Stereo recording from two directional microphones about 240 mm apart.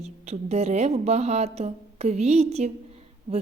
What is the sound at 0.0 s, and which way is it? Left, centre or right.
A woman's voice, right.